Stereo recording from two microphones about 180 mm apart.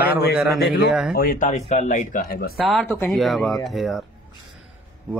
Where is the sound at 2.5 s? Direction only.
Centre (ahead or behind).